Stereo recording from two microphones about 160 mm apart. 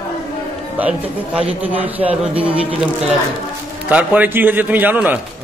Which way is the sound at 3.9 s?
10° right (ahead or behind).